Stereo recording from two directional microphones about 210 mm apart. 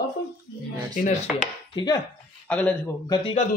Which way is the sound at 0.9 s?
35° left (ahead or behind).